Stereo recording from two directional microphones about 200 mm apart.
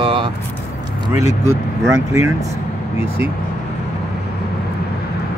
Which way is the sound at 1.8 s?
15° right (ahead or behind).